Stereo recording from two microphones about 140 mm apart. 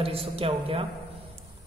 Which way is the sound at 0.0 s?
45° right (ahead or behind).